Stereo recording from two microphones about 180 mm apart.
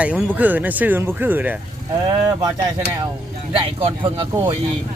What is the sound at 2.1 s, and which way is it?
Speech, 25° right (ahead or behind).